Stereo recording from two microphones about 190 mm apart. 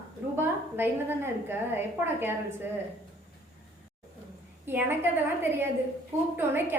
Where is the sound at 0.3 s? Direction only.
10° right (ahead or behind).